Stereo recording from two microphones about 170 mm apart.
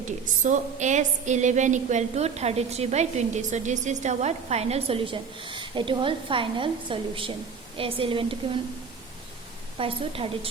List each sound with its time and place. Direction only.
0.4 s a woman's voice: 45° right (ahead or behind)
9.7 s a woman's voice: 30° right (ahead or behind)